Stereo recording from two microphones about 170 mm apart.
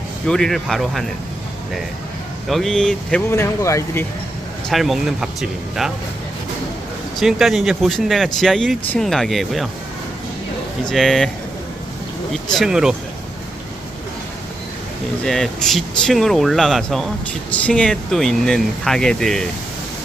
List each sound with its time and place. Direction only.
0.3 s speech: 5° left (ahead or behind)
2.5 s speech: centre (ahead or behind)
3.3 s speech: 15° left (ahead or behind)
4.7 s speech: centre (ahead or behind)
7.2 s speech: centre (ahead or behind)
10.8 s speech: centre (ahead or behind)
12.3 s speech: centre (ahead or behind)
15.2 s speech: centre (ahead or behind)